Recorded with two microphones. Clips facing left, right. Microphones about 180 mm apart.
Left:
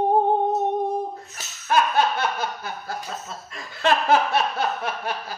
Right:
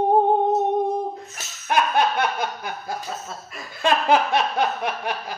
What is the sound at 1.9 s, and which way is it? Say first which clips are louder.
Snicker: right 1 dB; 15° right (ahead or behind).